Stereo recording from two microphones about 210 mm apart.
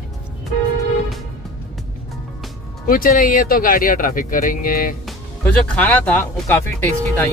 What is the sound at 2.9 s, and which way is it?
Speech, 45° left (ahead or behind).